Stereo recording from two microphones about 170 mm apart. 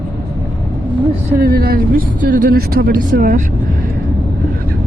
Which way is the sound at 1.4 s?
65° right (ahead or behind).